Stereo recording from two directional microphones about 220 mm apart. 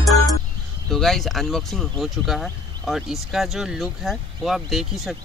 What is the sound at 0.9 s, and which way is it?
Speech, centre (ahead or behind).